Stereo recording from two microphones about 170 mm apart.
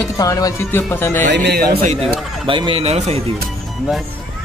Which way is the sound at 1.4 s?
65° right (ahead or behind).